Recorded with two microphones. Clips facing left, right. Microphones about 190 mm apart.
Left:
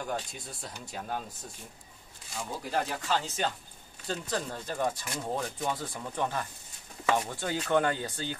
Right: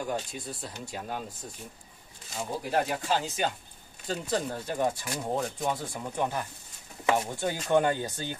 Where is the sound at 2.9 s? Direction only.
15° right (ahead or behind).